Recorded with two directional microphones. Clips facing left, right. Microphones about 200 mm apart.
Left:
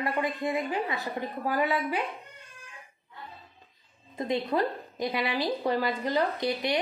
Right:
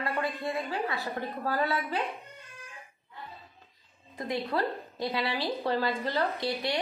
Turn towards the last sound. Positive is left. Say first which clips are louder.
# left 3 dB
turn(degrees=20)  # may be behind; listen again after turning